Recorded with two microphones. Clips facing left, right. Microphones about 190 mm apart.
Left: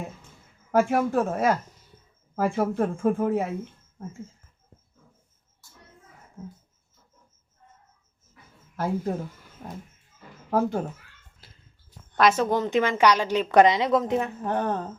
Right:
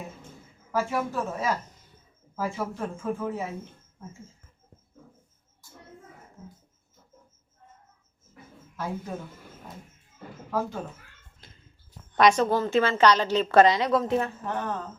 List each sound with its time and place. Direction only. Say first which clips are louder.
0.7 s speech: left 6 dB; 55° left (ahead or behind)
8.7 s speech: left 7 dB; 55° left (ahead or behind)
10.5 s speech: left 6 dB; 55° left (ahead or behind)
11.4 s a sound: right 2 dB; 5° left (ahead or behind)
12.1 s a woman's voice: right 1 dB; 5° left (ahead or behind)
12.5 s a woman's voice: even; 15° left (ahead or behind)
14.5 s speech: left 8 dB; 35° left (ahead or behind)